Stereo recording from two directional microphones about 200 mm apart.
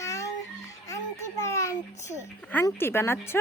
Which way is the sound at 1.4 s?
15° left (ahead or behind).